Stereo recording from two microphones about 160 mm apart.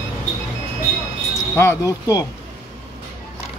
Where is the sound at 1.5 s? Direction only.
15° left (ahead or behind).